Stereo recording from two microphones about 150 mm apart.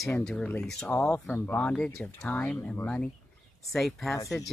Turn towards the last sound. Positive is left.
turn(degrees=0)  # may be behind; listen again after turning